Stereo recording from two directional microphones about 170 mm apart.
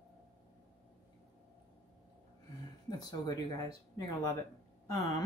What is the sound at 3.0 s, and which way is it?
Speech, 25° left (ahead or behind).